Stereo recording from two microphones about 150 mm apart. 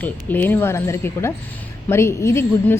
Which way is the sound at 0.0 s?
10° left (ahead or behind).